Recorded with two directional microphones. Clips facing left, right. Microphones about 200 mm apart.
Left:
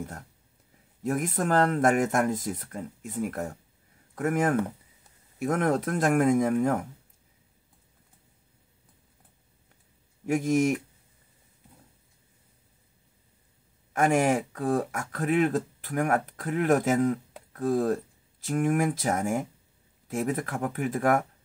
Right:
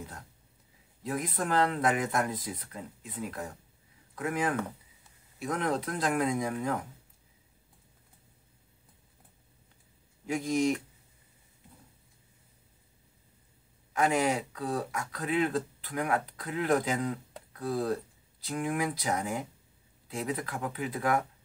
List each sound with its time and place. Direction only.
1.0 s speech: 45° left (ahead or behind)
10.2 s speech: 50° left (ahead or behind)
13.9 s speech: 45° left (ahead or behind)